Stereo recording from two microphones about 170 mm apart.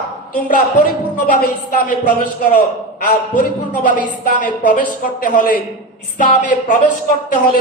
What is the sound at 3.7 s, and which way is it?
A man's voice, 50° left (ahead or behind).